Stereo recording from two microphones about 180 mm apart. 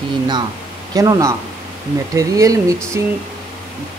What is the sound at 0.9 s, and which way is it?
Speech, 20° right (ahead or behind).